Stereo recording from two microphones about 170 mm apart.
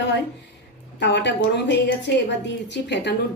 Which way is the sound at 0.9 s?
90° left.